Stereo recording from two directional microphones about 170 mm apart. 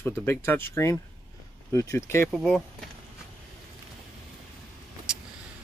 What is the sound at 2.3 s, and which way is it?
Speech, centre (ahead or behind).